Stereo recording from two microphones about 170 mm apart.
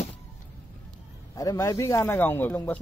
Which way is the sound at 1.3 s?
20° left (ahead or behind).